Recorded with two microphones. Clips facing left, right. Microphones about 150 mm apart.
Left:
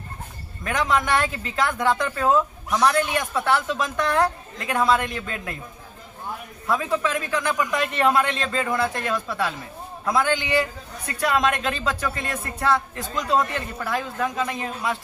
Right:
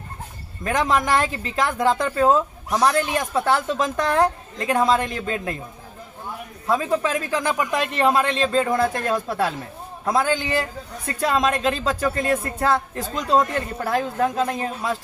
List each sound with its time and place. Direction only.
0.7 s speech: 35° right (ahead or behind)
6.7 s speech: 35° right (ahead or behind)
11.1 s speech: 30° right (ahead or behind)